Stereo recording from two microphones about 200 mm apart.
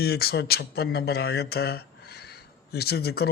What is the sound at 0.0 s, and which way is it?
Speech, 50° left (ahead or behind).